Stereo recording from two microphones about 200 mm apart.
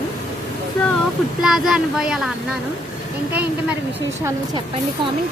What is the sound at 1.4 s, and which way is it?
Speech, centre (ahead or behind).